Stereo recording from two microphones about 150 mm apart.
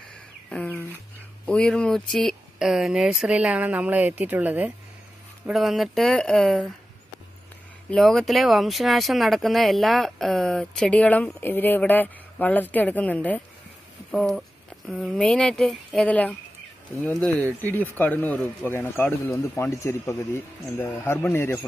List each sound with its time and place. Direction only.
0.5 s speech: 10° left (ahead or behind)
7.9 s speech: centre (ahead or behind)
17.6 s speech: 10° left (ahead or behind)